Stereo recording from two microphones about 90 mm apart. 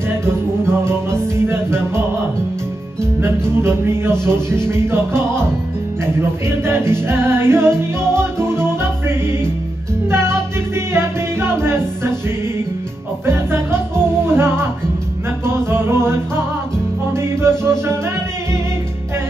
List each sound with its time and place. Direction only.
0.1 s music: 25° right (ahead or behind)
3.0 s music: 30° right (ahead or behind)